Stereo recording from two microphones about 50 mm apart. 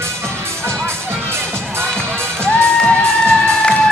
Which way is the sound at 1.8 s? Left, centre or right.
Centre.